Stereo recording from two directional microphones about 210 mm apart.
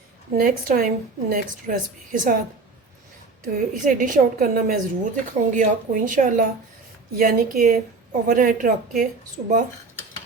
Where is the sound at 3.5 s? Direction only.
40° right (ahead or behind).